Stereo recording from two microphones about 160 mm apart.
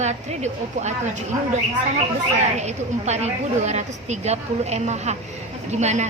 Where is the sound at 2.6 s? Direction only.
45° right (ahead or behind).